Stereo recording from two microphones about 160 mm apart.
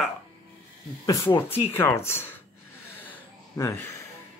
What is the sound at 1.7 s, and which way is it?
Speech, 15° left (ahead or behind).